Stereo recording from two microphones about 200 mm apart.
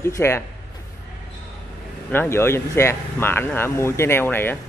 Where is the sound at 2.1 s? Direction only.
10° left (ahead or behind).